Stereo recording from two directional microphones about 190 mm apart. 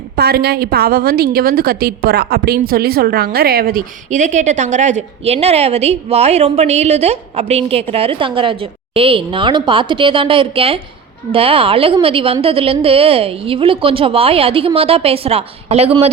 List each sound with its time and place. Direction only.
0.2 s a woman's voice: 60° right (ahead or behind); by 16.0 s 30° right (ahead or behind)